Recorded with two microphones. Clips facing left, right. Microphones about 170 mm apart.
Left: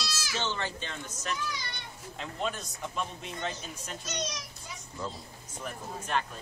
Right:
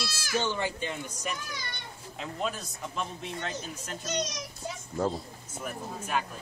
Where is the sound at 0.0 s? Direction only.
50° right (ahead or behind).